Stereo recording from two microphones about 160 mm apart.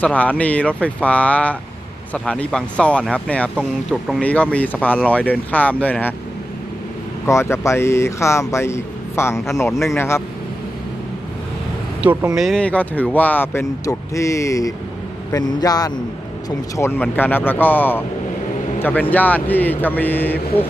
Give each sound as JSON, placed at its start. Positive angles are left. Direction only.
{"t": 0.0, "sound": "speech", "side_deg": 10}
{"t": 7.3, "sound": "speech", "side_deg": 15}
{"t": 12.0, "sound": "a man's voice", "side_deg": -5}